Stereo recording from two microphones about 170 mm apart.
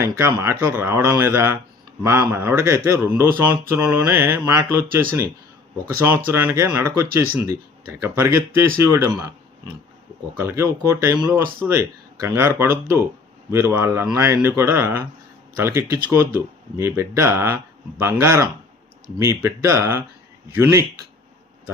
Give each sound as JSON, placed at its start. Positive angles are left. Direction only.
{"t": 0.0, "sound": "speech", "side_deg": -15}
{"t": 6.1, "sound": "speech", "side_deg": -15}
{"t": 10.3, "sound": "speech", "side_deg": -15}